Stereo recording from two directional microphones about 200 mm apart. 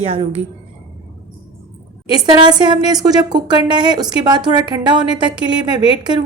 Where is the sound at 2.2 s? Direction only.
25° right (ahead or behind).